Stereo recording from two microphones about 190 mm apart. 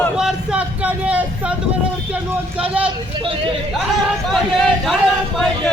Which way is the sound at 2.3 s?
5° right (ahead or behind).